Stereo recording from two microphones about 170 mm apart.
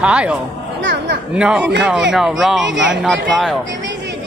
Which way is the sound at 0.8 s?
90° right.